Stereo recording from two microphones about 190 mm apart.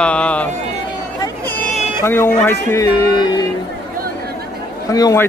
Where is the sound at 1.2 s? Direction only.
10° left (ahead or behind).